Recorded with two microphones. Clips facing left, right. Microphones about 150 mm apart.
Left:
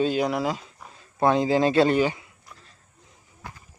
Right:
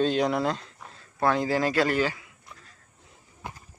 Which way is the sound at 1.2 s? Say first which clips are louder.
Left 4 dB; 20° left (ahead or behind).